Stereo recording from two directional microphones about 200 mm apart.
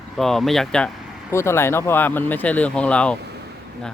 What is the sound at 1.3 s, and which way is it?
Speech, 15° left (ahead or behind).